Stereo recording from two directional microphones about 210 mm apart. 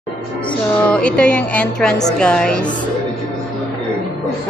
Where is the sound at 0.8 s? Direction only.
5° left (ahead or behind).